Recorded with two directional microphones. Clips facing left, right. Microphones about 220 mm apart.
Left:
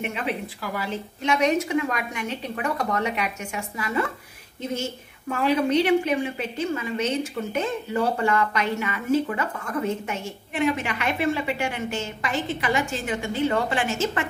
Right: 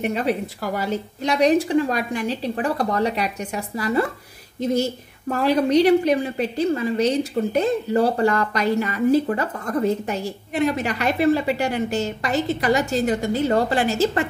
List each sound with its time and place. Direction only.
0.0 s a woman's voice: 40° right (ahead or behind)